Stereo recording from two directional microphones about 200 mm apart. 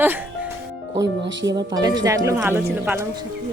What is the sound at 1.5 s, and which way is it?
Speech, 20° right (ahead or behind).